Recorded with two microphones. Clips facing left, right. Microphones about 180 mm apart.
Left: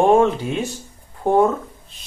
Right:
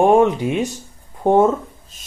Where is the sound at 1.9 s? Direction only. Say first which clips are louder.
Even; 45° right (ahead or behind).